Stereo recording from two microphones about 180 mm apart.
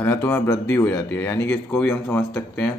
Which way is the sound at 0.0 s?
15° left (ahead or behind).